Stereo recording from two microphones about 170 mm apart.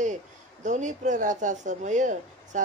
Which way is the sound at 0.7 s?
45° right (ahead or behind).